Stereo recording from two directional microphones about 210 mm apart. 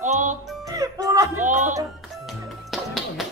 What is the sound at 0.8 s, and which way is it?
Music, 15° right (ahead or behind).